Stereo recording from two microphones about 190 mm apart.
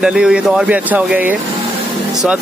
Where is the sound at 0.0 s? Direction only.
5° right (ahead or behind).